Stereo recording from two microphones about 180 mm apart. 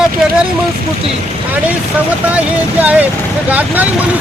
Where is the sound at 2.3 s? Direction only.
10° right (ahead or behind).